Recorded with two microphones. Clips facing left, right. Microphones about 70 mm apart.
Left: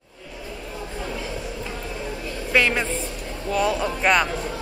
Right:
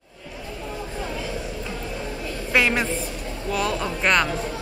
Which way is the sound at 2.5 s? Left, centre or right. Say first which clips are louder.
Even; centre.